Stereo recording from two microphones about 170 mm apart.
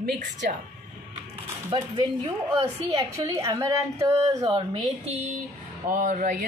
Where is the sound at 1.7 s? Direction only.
30° right (ahead or behind).